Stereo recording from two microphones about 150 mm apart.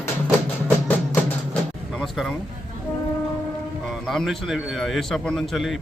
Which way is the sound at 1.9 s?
Centre (ahead or behind).